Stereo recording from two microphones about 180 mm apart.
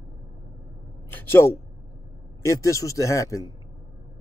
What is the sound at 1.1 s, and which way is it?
Speech, 10° left (ahead or behind).